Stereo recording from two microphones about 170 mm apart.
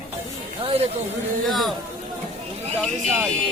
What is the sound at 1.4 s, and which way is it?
Speech, centre (ahead or behind).